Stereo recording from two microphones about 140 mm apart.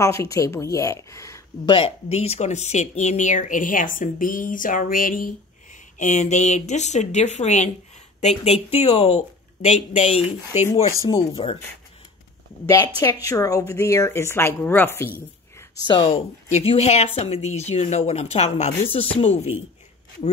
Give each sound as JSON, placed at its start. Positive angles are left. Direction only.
{"t": 0.0, "sound": "speech", "side_deg": 20}
{"t": 1.7, "sound": "speech", "side_deg": 40}
{"t": 12.6, "sound": "speech", "side_deg": 25}
{"t": 16.1, "sound": "speech", "side_deg": 50}